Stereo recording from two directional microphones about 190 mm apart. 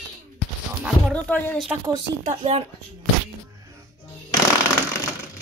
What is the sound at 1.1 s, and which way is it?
Speech, 5° left (ahead or behind).